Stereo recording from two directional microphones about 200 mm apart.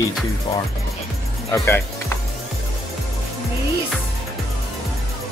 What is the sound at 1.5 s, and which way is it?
Speech, 10° left (ahead or behind).